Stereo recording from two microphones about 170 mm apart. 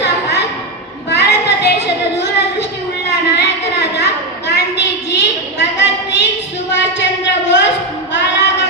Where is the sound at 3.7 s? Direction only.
75° left (ahead or behind).